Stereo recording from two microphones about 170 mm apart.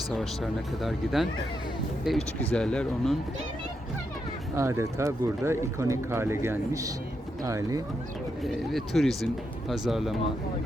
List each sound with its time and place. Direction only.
0.8 s speech: centre (ahead or behind)
4.5 s speech: 15° right (ahead or behind)
8.4 s speech: centre (ahead or behind)